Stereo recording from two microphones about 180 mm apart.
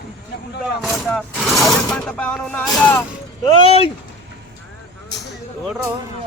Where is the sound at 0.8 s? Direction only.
Centre (ahead or behind).